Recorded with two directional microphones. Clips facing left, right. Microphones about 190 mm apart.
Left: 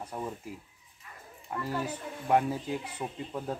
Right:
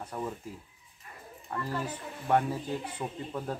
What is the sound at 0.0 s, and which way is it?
Speech, 10° left (ahead or behind).